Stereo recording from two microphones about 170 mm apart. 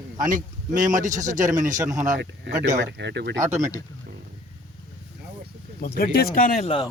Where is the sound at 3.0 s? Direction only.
90° right.